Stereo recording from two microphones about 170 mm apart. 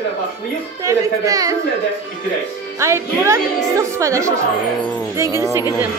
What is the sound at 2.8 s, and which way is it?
A woman's voice, 15° right (ahead or behind).